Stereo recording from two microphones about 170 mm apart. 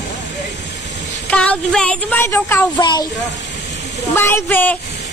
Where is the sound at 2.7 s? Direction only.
25° left (ahead or behind).